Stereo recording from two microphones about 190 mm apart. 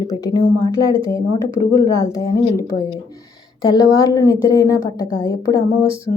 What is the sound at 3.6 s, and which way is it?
A woman's voice, 20° left (ahead or behind).